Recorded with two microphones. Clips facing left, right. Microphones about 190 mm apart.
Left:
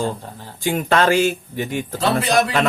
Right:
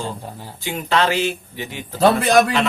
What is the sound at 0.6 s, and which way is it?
Speech, 50° left (ahead or behind).